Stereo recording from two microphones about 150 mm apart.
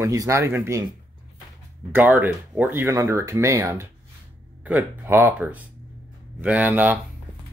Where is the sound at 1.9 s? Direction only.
10° right (ahead or behind).